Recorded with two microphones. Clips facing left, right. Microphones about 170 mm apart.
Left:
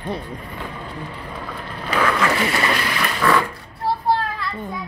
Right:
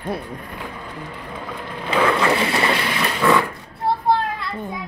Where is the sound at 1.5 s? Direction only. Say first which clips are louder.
Right 2 dB; 20° right (ahead or behind).